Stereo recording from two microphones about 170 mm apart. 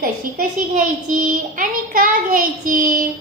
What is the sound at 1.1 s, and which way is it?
Child singing, 55° right (ahead or behind).